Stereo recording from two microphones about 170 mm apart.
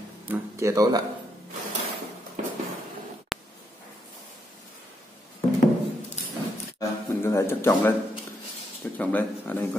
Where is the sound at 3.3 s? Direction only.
Centre (ahead or behind).